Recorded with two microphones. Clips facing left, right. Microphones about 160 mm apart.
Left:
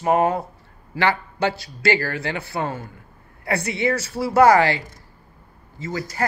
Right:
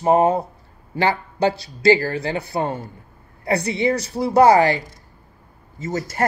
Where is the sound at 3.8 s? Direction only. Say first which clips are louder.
Right 1 dB; 15° right (ahead or behind).